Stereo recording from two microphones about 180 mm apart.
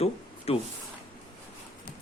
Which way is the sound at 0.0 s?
35° left (ahead or behind).